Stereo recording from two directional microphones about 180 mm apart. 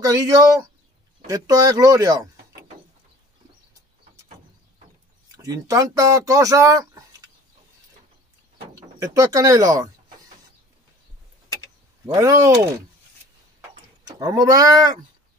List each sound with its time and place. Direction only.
0.0 s speech: 20° right (ahead or behind)
5.4 s speech: 20° right (ahead or behind)
8.7 s speech: 15° right (ahead or behind)
12.1 s speech: 15° right (ahead or behind)
14.0 s speech: 20° right (ahead or behind)